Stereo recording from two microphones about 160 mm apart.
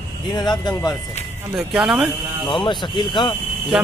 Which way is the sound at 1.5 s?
Centre (ahead or behind).